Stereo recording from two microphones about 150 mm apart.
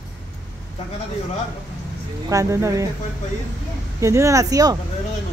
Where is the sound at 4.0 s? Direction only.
20° right (ahead or behind).